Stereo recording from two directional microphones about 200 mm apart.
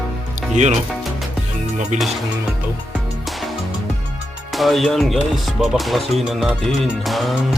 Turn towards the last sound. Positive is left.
turn(degrees=0)  # may be behind; listen again after turning